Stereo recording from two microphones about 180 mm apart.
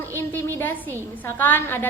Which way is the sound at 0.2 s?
10° left (ahead or behind).